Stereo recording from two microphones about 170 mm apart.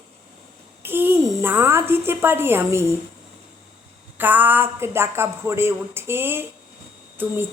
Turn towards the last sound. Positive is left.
turn(degrees=-10)  # may be behind; listen again after turning